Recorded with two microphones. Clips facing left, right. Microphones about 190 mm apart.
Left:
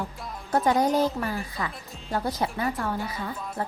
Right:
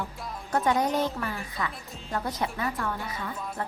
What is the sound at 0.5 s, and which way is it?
A woman's voice, 35° left (ahead or behind).